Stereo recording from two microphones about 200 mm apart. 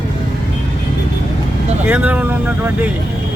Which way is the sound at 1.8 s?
5° right (ahead or behind).